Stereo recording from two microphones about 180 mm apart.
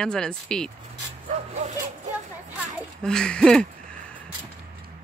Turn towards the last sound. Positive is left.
turn(degrees=5)  # may be behind; listen again after turning